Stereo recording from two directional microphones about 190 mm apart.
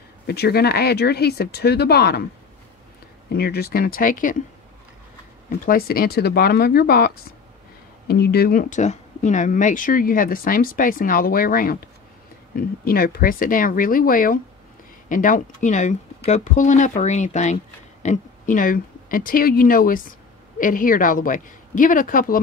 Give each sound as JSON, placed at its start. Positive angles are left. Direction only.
{"t": 0.3, "sound": "speech", "side_deg": 55}
{"t": 3.3, "sound": "speech", "side_deg": 55}
{"t": 5.7, "sound": "speech", "side_deg": 50}
{"t": 8.1, "sound": "speech", "side_deg": 55}